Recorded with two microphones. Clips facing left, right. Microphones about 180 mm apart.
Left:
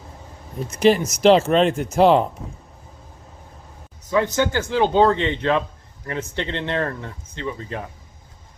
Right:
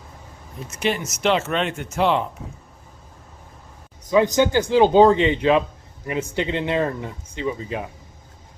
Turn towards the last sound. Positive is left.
turn(degrees=-10)  # may be behind; listen again after turning